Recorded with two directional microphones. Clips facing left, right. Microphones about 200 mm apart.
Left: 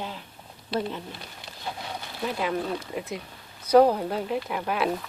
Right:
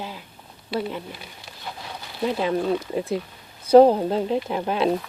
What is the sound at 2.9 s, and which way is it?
Speech, 30° right (ahead or behind).